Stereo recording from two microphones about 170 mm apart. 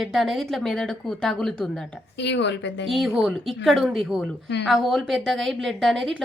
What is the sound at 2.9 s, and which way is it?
A woman's voice, centre (ahead or behind).